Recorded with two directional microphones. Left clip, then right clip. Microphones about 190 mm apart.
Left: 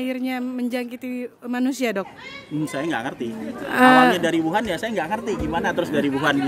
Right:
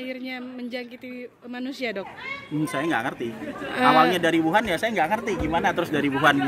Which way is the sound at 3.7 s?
40° left (ahead or behind).